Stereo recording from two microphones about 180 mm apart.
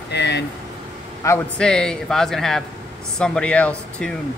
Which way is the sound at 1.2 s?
15° left (ahead or behind).